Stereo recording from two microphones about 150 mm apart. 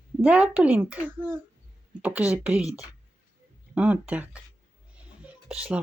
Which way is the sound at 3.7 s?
10° right (ahead or behind).